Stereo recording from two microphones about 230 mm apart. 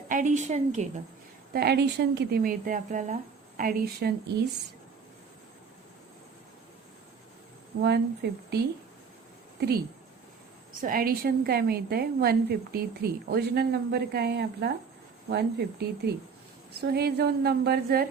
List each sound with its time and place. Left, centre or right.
0.1 s speech: right
1.5 s speech: right
7.8 s a woman's voice: right
10.8 s a woman's voice: right